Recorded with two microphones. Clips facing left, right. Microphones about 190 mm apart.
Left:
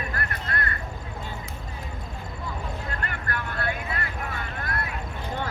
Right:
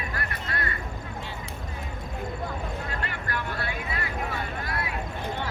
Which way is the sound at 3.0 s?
50° left (ahead or behind).